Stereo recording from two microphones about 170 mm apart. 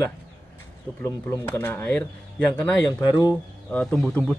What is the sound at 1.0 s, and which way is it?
Speech, 10° left (ahead or behind).